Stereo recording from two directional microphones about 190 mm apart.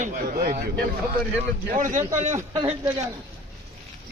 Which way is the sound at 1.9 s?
40° right (ahead or behind).